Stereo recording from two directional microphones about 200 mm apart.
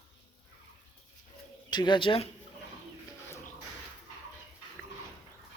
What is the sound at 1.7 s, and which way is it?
Speech, 20° left (ahead or behind).